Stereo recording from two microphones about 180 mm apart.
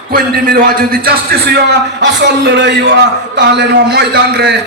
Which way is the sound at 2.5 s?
70° right (ahead or behind).